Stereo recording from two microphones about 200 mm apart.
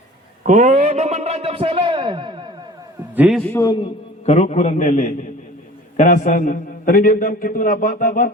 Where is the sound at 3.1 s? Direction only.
Centre (ahead or behind).